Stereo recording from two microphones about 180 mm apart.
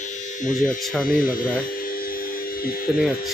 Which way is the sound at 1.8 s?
50° left (ahead or behind).